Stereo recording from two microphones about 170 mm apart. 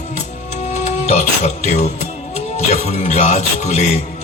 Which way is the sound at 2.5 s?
40° left (ahead or behind).